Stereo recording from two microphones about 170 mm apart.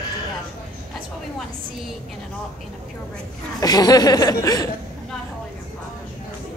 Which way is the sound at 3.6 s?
20° left (ahead or behind).